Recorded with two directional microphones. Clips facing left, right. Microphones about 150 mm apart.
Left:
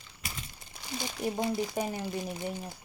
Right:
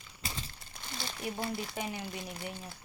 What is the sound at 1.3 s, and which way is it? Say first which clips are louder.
Speech: left 7 dB; 20° left (ahead or behind).